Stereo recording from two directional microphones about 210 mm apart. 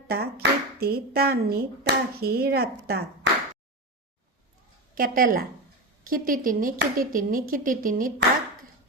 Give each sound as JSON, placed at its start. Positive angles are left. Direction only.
{"t": 0.1, "sound": "speech", "side_deg": -50}
{"t": 4.9, "sound": "a woman's voice", "side_deg": -45}